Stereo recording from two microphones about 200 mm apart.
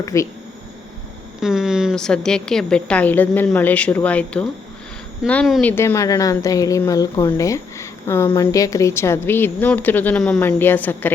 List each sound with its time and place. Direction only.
0.0 s a woman's voice: 15° left (ahead or behind)
1.4 s a woman's voice: 5° right (ahead or behind)